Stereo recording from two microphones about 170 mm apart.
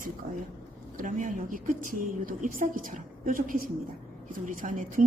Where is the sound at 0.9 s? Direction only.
50° right (ahead or behind).